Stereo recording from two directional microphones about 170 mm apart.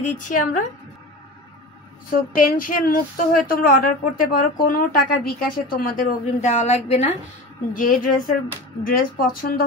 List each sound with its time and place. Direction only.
0.3 s a woman's voice: 50° left (ahead or behind)
2.0 s a woman's voice: 55° left (ahead or behind); by 7.1 s 40° left (ahead or behind)
7.7 s a woman's voice: 55° left (ahead or behind)